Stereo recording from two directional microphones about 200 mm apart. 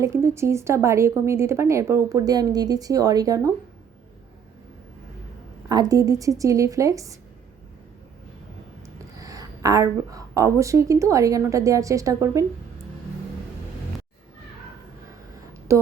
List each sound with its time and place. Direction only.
0.0 s speech: 15° right (ahead or behind)
5.6 s speech: 15° right (ahead or behind)
9.2 s speech: 20° right (ahead or behind)
15.7 s speech: 15° right (ahead or behind)